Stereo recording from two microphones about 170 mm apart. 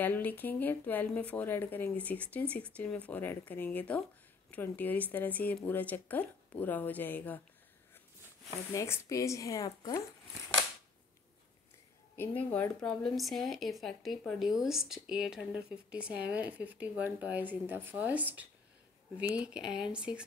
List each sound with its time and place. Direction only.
0.0 s speech: 10° left (ahead or behind)
8.7 s speech: 15° left (ahead or behind)
12.2 s speech: 10° left (ahead or behind); by 20.2 s 5° right (ahead or behind)